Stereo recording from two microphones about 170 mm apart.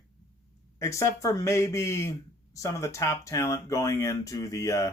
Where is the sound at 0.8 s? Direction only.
15° left (ahead or behind).